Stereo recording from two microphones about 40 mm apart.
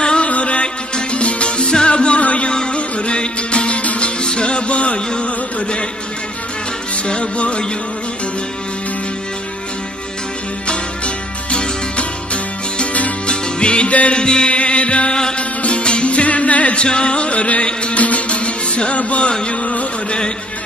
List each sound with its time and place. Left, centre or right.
0.0 s music: left
0.3 s music: left
4.2 s music: left
7.1 s music: left
13.3 s music: left
16.8 s music: left